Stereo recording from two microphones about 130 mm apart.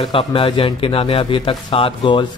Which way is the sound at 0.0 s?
45° left (ahead or behind).